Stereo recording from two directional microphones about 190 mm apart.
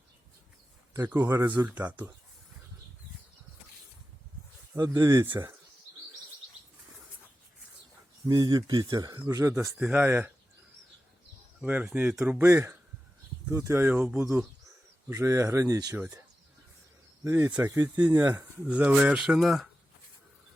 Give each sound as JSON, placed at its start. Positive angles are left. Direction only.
{"t": 0.9, "sound": "speech", "side_deg": -15}
{"t": 4.9, "sound": "speech", "side_deg": -20}
{"t": 8.3, "sound": "speech", "side_deg": -20}
{"t": 11.6, "sound": "speech", "side_deg": -10}
{"t": 17.2, "sound": "speech", "side_deg": -15}